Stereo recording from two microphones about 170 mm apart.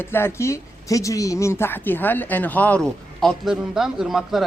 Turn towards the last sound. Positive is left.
turn(degrees=0)  # may be behind; listen again after turning